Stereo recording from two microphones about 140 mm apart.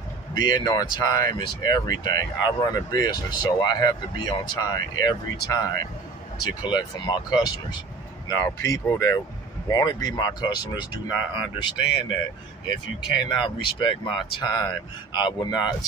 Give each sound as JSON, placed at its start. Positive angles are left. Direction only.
{"t": 0.3, "sound": "speech", "side_deg": 30}
{"t": 13.3, "sound": "speech", "side_deg": 35}